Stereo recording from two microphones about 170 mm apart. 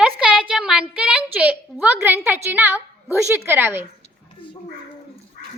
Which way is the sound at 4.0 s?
30° left (ahead or behind).